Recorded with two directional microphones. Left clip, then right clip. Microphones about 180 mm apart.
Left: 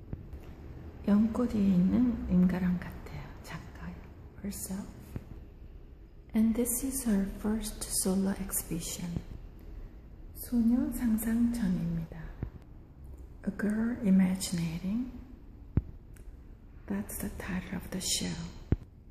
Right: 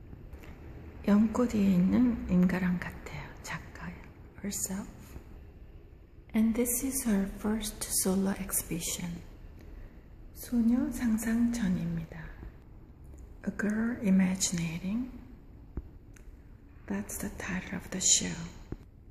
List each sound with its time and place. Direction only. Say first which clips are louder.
1.0 s a woman's voice: right 2 dB; 10° right (ahead or behind)
6.3 s a woman's voice: right 1 dB; centre (ahead or behind)
10.4 s a woman's voice: even; 5° right (ahead or behind)
13.4 s a woman's voice: right 1 dB; centre (ahead or behind)
16.8 s a woman's voice: right 1 dB; centre (ahead or behind)